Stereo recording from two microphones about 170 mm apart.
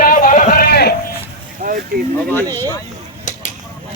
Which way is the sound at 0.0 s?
55° left (ahead or behind).